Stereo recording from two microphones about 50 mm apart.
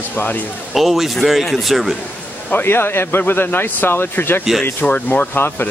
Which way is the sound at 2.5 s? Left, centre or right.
Left.